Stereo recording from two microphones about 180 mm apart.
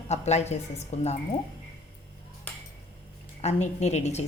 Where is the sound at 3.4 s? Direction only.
35° left (ahead or behind).